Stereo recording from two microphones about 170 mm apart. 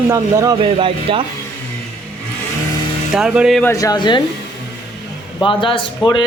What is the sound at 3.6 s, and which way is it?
Speech, 15° left (ahead or behind).